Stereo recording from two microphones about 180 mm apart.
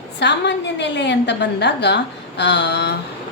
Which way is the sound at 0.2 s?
75° left (ahead or behind).